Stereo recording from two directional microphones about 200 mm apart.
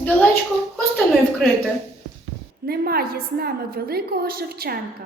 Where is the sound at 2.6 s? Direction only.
50° right (ahead or behind).